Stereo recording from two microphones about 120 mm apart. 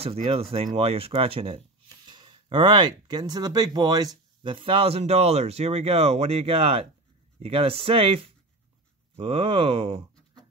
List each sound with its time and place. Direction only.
0.0 s speech: 55° right (ahead or behind)
1.9 s speech: 40° right (ahead or behind)